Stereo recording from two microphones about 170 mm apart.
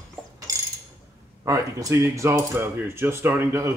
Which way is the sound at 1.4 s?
20° right (ahead or behind).